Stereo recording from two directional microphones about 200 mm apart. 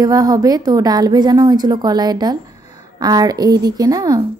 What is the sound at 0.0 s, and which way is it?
Speech, 20° right (ahead or behind).